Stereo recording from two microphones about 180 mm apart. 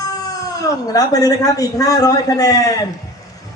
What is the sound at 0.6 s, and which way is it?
A child's voice, 20° left (ahead or behind).